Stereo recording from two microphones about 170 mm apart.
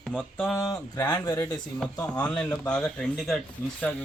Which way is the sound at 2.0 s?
5° left (ahead or behind).